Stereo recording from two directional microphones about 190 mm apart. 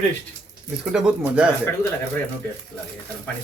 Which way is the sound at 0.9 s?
5° right (ahead or behind).